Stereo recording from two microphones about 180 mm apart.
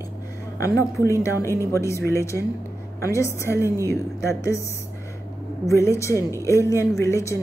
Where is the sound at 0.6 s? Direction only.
15° left (ahead or behind).